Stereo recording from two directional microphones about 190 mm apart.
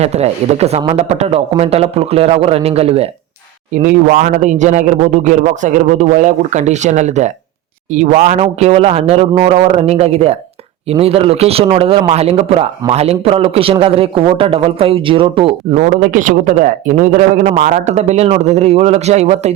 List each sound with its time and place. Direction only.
0.0 s speech: 35° right (ahead or behind)
3.8 s a man's voice: 45° right (ahead or behind); by 15.5 s 30° right (ahead or behind)
15.7 s speech: 45° right (ahead or behind)